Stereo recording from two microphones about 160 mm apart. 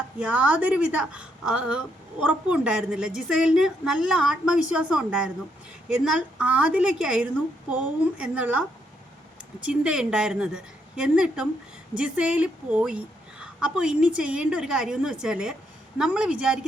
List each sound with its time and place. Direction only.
0.2 s a woman's voice: 5° right (ahead or behind)